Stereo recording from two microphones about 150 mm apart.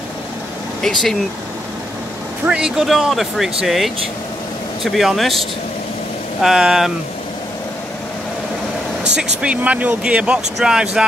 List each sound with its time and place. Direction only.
2.4 s speech: 5° right (ahead or behind)
4.9 s speech: centre (ahead or behind)
6.4 s speech: 5° right (ahead or behind)
9.1 s speech: 5° right (ahead or behind)